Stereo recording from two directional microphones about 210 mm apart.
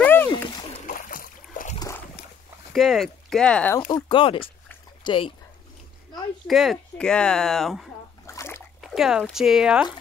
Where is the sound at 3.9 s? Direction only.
25° left (ahead or behind).